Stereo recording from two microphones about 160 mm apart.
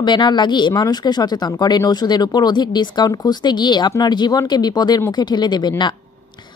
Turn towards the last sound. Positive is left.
turn(degrees=25)  # may be behind; listen again after turning